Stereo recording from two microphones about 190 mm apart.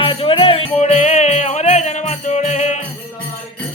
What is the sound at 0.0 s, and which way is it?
Music, 25° left (ahead or behind).